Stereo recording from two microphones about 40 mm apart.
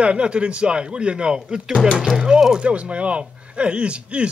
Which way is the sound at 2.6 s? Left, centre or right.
Right.